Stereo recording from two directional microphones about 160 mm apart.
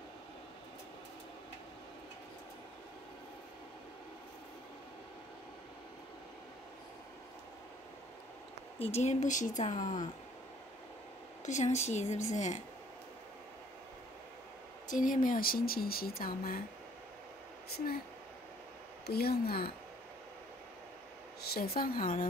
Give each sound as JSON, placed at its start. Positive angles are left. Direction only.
{"t": 8.8, "sound": "speech", "side_deg": 45}
{"t": 11.4, "sound": "speech", "side_deg": 45}
{"t": 14.9, "sound": "speech", "side_deg": 55}
{"t": 17.7, "sound": "a woman's voice", "side_deg": 70}
{"t": 19.0, "sound": "a woman's voice", "side_deg": 75}
{"t": 21.4, "sound": "speech", "side_deg": 75}